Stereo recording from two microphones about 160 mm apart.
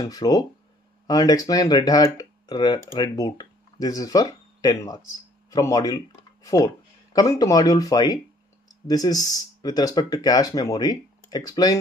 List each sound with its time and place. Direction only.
0.0 s speech: 25° left (ahead or behind)